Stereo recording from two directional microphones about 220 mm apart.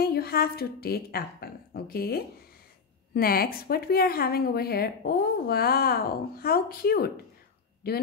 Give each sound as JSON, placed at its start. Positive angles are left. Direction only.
{"t": 0.0, "sound": "a woman's voice", "side_deg": 45}